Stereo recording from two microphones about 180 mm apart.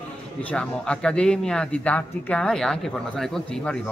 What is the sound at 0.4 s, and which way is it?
Speech, 5° left (ahead or behind).